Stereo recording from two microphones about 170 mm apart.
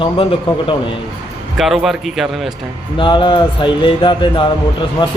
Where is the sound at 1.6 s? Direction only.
Centre (ahead or behind).